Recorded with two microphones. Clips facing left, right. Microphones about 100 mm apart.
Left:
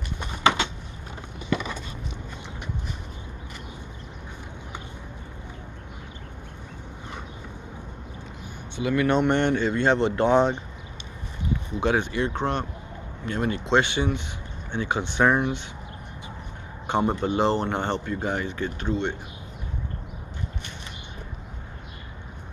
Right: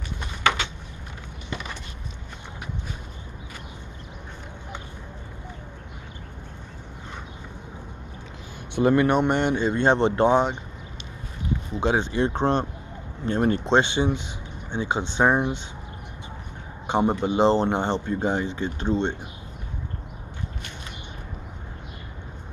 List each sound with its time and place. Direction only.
0.4 s a sound: 30° left (ahead or behind)
8.8 s speech: 50° right (ahead or behind)
9.1 s speech: 10° right (ahead or behind)
10.3 s speech: 10° right (ahead or behind)
11.8 s speech: 25° right (ahead or behind)
13.7 s speech: 25° right (ahead or behind)
16.8 s speech: 15° right (ahead or behind)